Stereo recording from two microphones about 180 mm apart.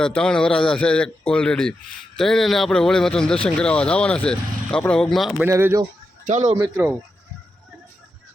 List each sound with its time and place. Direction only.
0.0 s speech: 5° left (ahead or behind)
5.4 s speech: 10° right (ahead or behind)
6.2 s speech: 40° right (ahead or behind)
6.6 s speech: 15° right (ahead or behind)